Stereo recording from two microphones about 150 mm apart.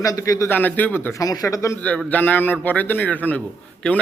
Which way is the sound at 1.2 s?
25° left (ahead or behind).